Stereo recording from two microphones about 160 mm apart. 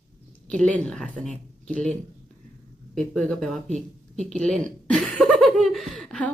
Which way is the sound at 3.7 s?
45° right (ahead or behind).